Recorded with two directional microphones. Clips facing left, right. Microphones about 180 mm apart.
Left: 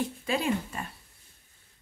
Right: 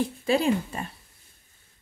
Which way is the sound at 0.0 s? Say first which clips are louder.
Right 6 dB; 30° right (ahead or behind).